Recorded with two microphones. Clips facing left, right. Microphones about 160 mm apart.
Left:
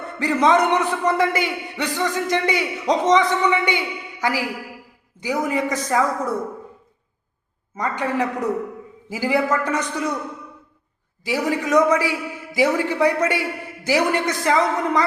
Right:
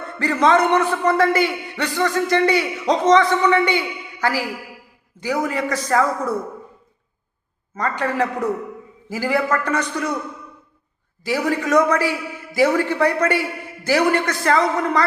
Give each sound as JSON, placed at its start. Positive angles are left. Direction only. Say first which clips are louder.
{"t": 0.2, "sound": "a man's voice", "louder": "right 1 dB", "side_deg": 15}
{"t": 7.8, "sound": "a man's voice", "louder": "right 1 dB", "side_deg": 15}
{"t": 11.2, "sound": "a man's voice", "louder": "right 1 dB", "side_deg": 15}